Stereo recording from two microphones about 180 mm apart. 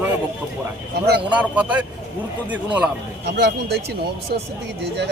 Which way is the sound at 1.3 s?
5° right (ahead or behind).